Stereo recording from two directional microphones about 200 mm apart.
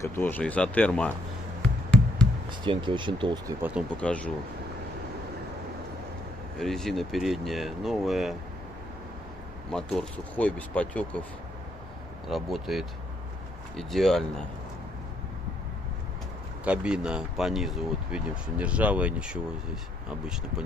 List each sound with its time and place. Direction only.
0.0 s speech: 10° left (ahead or behind)
1.6 s a sound: 5° left (ahead or behind)
2.6 s speech: 25° right (ahead or behind)
3.9 s speech: 5° left (ahead or behind)
6.6 s speech: centre (ahead or behind)
9.7 s speech: 5° left (ahead or behind)
12.3 s speech: centre (ahead or behind)
16.6 s speech: 5° right (ahead or behind)